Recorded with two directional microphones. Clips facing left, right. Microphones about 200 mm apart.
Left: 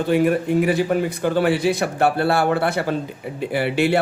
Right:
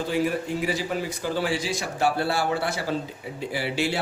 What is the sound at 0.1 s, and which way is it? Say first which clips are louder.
A man's voice: left 9 dB; 60° left (ahead or behind).